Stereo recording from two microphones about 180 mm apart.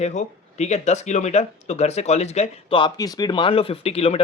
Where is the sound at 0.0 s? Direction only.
40° left (ahead or behind).